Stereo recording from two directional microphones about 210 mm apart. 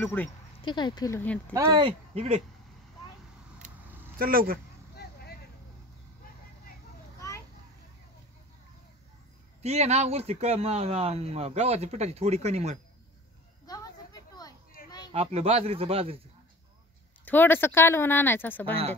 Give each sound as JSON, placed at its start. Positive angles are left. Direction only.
{"t": 0.0, "sound": "speech", "side_deg": 10}
{"t": 0.6, "sound": "speech", "side_deg": 20}
{"t": 1.5, "sound": "speech", "side_deg": -15}
{"t": 4.2, "sound": "speech", "side_deg": -45}
{"t": 4.9, "sound": "vehicle", "side_deg": 50}
{"t": 7.2, "sound": "children playing", "side_deg": 15}
{"t": 9.6, "sound": "speech", "side_deg": -30}
{"t": 13.7, "sound": "a sound", "side_deg": 20}
{"t": 15.1, "sound": "speech", "side_deg": -30}
{"t": 17.2, "sound": "speech", "side_deg": 10}